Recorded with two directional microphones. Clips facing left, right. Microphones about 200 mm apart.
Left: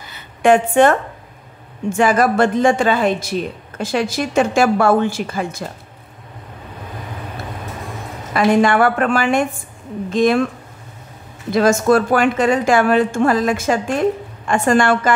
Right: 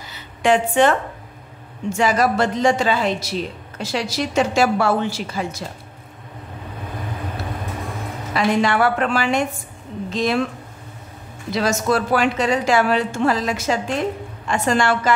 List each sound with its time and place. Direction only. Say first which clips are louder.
0.0 s a sound: left 5 dB; 55° left (ahead or behind)
1.9 s a woman's voice: left 3 dB; 55° left (ahead or behind)
8.3 s a woman's voice: left 5 dB; 50° left (ahead or behind)
11.5 s a woman's voice: left 6 dB; 50° left (ahead or behind)